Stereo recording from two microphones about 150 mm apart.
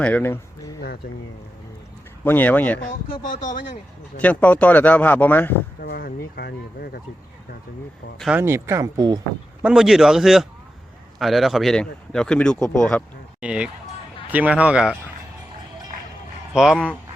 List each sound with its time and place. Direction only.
0.0 s speech: 10° left (ahead or behind)
2.2 s speech: 15° left (ahead or behind)
4.2 s speech: 10° left (ahead or behind)
5.8 s speech: 90° left
8.4 s speech: 15° right (ahead or behind)
9.6 s speech: 5° right (ahead or behind)
13.4 s a man's voice: 10° right (ahead or behind)
16.6 s speech: 5° right (ahead or behind)